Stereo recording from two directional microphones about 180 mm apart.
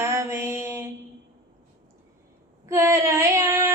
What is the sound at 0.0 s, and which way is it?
Mantra, 15° right (ahead or behind).